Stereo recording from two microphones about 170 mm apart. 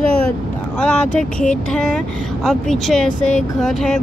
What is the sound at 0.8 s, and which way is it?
Speech, 5° left (ahead or behind).